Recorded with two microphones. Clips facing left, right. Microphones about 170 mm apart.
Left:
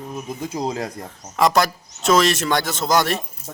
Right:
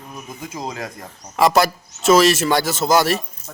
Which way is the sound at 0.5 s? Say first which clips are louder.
Left 4 dB; 25° left (ahead or behind).